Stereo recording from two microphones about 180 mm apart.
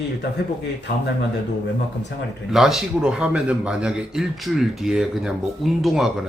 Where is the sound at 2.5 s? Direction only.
Centre (ahead or behind).